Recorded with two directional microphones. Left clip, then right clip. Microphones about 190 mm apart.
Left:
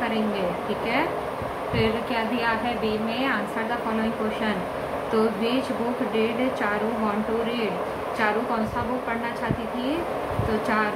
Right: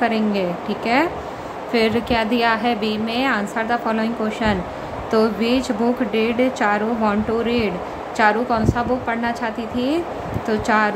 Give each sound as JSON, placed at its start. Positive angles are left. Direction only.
{"t": 0.0, "sound": "speech", "side_deg": -60}
{"t": 1.7, "sound": "speech", "side_deg": -60}
{"t": 5.1, "sound": "speech", "side_deg": -60}
{"t": 8.2, "sound": "speech", "side_deg": -60}
{"t": 10.7, "sound": "speech", "side_deg": -60}